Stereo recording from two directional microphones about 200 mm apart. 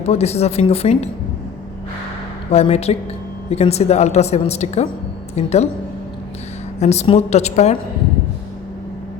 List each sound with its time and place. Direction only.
0.0 s a woman's voice: 30° left (ahead or behind)
2.5 s a woman's voice: 30° left (ahead or behind)
6.7 s a woman's voice: 35° left (ahead or behind)